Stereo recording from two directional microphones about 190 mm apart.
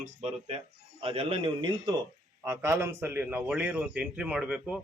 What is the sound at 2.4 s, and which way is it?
A man's voice, 15° right (ahead or behind).